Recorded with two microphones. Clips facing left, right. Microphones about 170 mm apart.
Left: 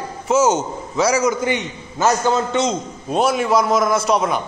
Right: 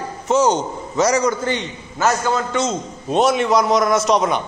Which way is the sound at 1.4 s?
15° left (ahead or behind).